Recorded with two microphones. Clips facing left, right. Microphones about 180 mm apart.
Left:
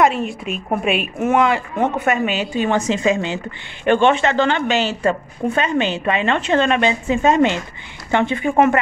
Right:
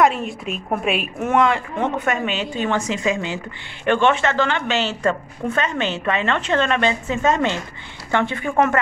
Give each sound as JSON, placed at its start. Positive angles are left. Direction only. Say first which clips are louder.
{"t": 0.0, "sound": "a woman's voice", "louder": "left 1 dB", "side_deg": 0}